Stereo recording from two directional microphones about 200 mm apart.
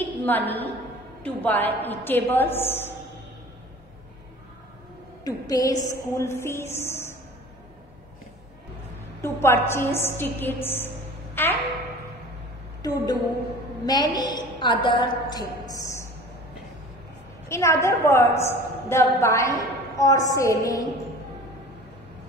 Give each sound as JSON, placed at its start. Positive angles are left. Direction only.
{"t": 0.2, "sound": "a woman's voice", "side_deg": 10}
{"t": 5.2, "sound": "a woman's voice", "side_deg": 15}
{"t": 9.2, "sound": "a woman's voice", "side_deg": 10}
{"t": 12.8, "sound": "a woman's voice", "side_deg": 20}
{"t": 15.8, "sound": "music", "side_deg": 15}
{"t": 17.5, "sound": "a woman's voice", "side_deg": 15}